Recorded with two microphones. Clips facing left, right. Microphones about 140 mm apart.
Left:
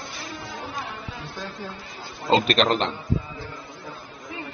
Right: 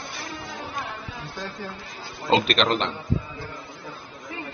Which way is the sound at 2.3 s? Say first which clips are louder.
Left 1 dB; 40° left (ahead or behind).